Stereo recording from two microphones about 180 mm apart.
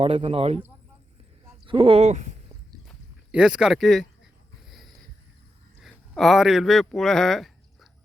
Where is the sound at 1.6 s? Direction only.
30° right (ahead or behind).